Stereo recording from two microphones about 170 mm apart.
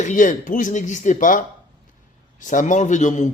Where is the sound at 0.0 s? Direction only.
45° left (ahead or behind).